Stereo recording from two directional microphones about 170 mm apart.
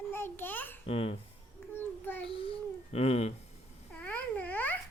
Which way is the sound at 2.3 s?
35° left (ahead or behind).